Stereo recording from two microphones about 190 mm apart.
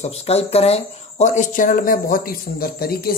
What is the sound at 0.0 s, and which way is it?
Speech, 35° left (ahead or behind).